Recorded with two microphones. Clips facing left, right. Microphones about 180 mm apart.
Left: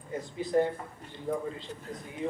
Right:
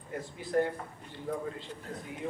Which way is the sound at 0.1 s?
20° left (ahead or behind).